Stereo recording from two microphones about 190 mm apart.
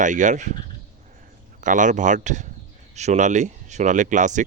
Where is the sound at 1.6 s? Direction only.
40° right (ahead or behind).